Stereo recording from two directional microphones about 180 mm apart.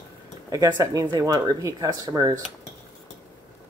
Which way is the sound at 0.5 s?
20° right (ahead or behind).